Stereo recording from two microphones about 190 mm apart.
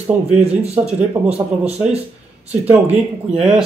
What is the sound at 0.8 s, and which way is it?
Speech, 35° right (ahead or behind).